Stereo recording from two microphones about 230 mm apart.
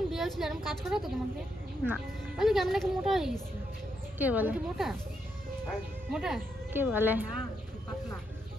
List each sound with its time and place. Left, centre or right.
0.1 s a woman's voice: centre